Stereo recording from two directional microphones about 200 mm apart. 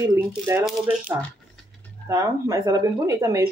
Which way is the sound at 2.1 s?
15° right (ahead or behind).